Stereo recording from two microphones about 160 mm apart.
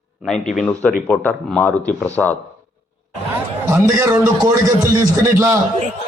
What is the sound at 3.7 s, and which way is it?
A man's voice, 15° right (ahead or behind).